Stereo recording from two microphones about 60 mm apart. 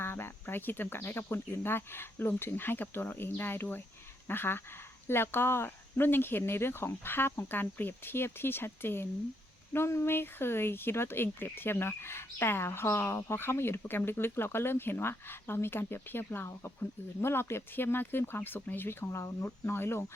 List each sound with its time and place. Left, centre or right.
0.0 s speech: left